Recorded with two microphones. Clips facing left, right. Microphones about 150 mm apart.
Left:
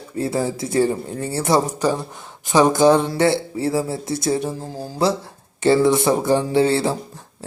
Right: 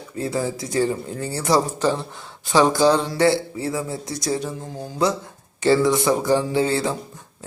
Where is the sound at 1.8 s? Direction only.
10° left (ahead or behind).